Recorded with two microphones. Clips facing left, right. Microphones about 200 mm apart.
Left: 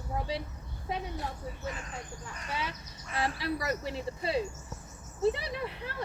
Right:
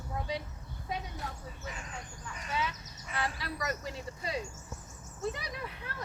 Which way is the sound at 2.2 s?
30° left (ahead or behind).